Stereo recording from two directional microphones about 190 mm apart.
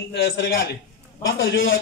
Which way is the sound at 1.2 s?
80° left.